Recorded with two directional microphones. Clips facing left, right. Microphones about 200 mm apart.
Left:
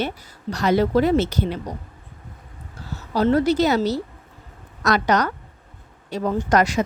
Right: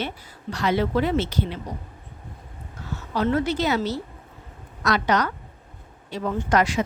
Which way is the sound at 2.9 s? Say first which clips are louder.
Left 4 dB; 35° left (ahead or behind).